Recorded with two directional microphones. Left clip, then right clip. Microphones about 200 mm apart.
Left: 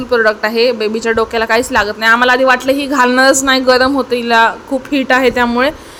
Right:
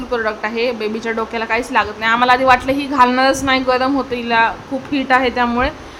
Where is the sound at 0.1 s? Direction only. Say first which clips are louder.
Left 8 dB; 20° left (ahead or behind).